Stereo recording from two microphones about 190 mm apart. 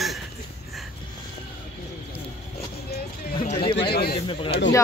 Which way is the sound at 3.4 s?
30° left (ahead or behind).